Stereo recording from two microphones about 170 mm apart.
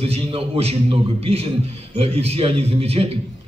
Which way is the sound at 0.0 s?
35° right (ahead or behind).